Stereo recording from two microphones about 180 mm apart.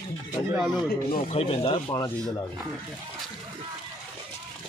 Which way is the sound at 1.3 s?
35° left (ahead or behind).